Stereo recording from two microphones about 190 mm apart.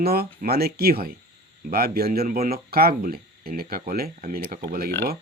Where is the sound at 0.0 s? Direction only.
55° right (ahead or behind).